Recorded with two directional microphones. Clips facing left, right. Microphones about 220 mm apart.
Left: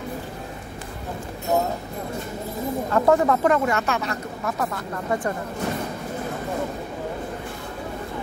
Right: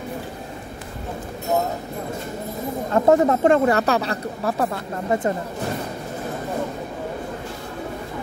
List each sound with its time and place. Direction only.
2.9 s speech: 25° right (ahead or behind)